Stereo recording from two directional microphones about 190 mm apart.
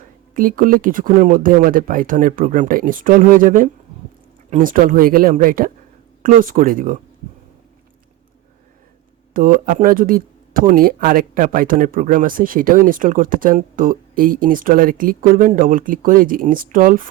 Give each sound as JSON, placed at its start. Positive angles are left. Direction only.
{"t": 0.3, "sound": "speech", "side_deg": -45}
{"t": 9.3, "sound": "speech", "side_deg": -45}